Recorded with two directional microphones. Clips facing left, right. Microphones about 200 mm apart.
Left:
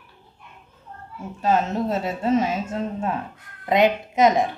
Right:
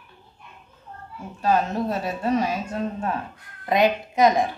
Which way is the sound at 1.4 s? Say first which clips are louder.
Left 1 dB; 20° left (ahead or behind).